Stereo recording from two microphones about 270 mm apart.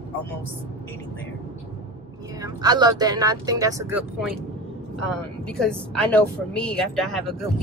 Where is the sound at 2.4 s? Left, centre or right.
Centre.